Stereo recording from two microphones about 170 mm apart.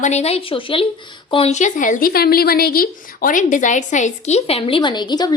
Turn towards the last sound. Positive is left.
turn(degrees=25)  # may be behind; listen again after turning